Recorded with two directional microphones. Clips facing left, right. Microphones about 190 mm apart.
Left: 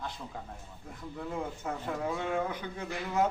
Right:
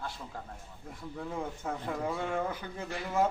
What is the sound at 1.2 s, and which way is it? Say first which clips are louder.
Speech: left 1 dB; centre (ahead or behind).